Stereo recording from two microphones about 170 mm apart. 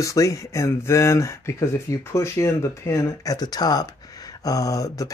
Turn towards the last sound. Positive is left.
turn(degrees=20)  # may be behind; listen again after turning